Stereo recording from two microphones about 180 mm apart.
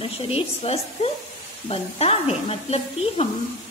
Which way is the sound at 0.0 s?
30° left (ahead or behind).